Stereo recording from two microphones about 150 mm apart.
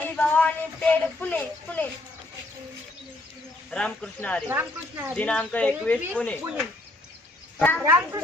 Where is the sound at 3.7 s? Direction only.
5° left (ahead or behind).